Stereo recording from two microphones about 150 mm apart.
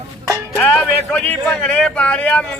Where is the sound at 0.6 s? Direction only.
5° left (ahead or behind).